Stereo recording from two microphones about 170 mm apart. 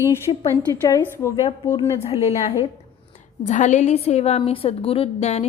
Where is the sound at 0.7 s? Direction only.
20° left (ahead or behind).